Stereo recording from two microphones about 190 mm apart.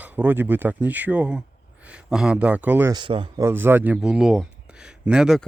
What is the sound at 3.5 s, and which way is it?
A man's voice, 10° right (ahead or behind).